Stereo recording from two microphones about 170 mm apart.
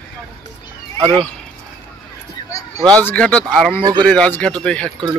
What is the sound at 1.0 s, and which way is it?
Speech, 30° right (ahead or behind).